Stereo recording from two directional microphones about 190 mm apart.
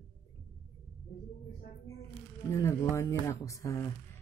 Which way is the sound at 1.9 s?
15° left (ahead or behind).